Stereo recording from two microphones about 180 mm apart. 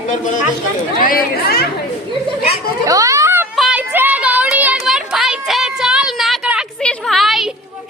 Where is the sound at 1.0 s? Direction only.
55° left (ahead or behind).